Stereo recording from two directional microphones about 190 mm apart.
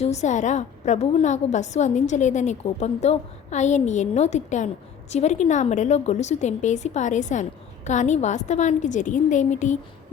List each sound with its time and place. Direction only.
0.0 s a woman's voice: 35° left (ahead or behind)